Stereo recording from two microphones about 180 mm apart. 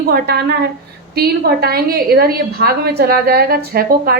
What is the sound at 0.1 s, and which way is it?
A woman's voice, 60° right (ahead or behind).